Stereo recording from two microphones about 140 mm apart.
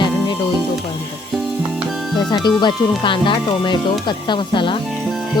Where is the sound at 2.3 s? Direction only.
30° left (ahead or behind).